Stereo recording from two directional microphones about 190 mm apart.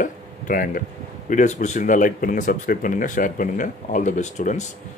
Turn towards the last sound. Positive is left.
turn(degrees=40)  # may be behind; listen again after turning